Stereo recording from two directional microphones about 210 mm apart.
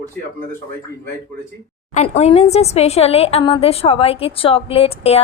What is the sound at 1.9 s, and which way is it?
A woman's voice, 35° left (ahead or behind).